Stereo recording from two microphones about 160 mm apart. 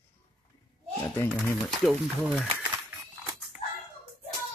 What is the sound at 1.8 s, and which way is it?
Speech, centre (ahead or behind).